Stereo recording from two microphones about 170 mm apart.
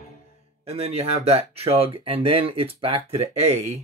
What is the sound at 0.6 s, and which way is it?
Speech, 35° right (ahead or behind).